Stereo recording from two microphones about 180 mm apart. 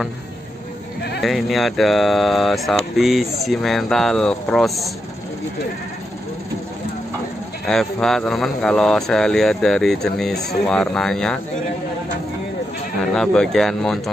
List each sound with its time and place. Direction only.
1.2 s speech: centre (ahead or behind)
7.6 s speech: centre (ahead or behind)
13.1 s speech: 5° left (ahead or behind)